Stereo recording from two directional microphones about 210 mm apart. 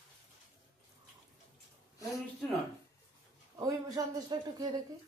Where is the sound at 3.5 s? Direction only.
15° right (ahead or behind).